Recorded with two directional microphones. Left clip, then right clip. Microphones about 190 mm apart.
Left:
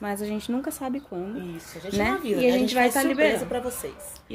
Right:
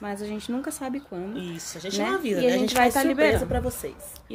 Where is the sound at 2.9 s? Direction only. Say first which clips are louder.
Right 1 dB; 5° left (ahead or behind).